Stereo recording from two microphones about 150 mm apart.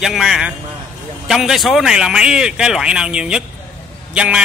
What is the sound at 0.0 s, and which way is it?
A man's voice, centre (ahead or behind).